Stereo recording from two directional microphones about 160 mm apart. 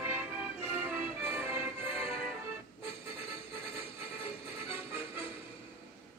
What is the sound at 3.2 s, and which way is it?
Music, 35° left (ahead or behind).